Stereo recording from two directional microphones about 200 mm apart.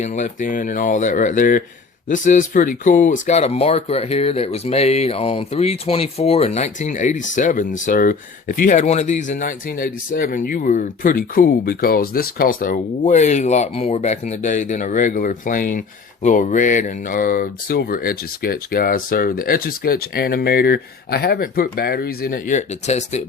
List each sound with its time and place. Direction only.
0.0 s speech: 40° left (ahead or behind)